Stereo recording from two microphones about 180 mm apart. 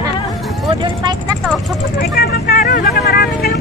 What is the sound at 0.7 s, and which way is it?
Vehicle, 25° right (ahead or behind).